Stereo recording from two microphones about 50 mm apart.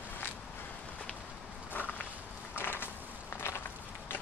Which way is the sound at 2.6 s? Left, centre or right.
Left.